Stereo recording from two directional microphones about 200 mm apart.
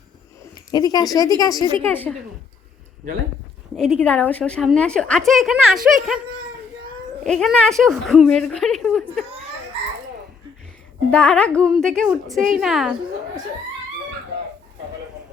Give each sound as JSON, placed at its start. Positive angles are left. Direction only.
{"t": 0.7, "sound": "a woman's voice", "side_deg": 20}
{"t": 3.8, "sound": "a woman's voice", "side_deg": 0}
{"t": 7.3, "sound": "a woman's voice", "side_deg": 5}
{"t": 11.1, "sound": "a woman's voice", "side_deg": 5}